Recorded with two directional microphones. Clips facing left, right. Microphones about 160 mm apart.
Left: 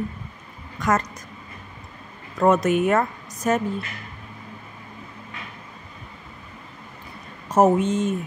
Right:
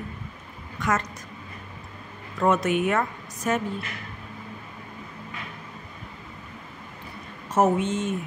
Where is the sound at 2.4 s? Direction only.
40° left (ahead or behind).